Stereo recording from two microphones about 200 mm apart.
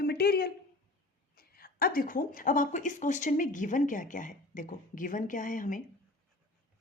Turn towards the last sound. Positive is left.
turn(degrees=40)  # may be behind; listen again after turning